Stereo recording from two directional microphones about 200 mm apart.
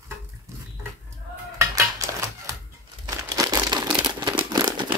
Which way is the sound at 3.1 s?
20° right (ahead or behind).